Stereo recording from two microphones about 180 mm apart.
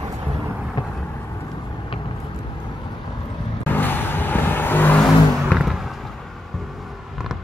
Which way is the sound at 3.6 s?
10° left (ahead or behind).